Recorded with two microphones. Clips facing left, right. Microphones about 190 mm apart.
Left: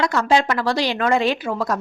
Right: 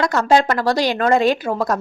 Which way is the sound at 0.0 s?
45° right (ahead or behind).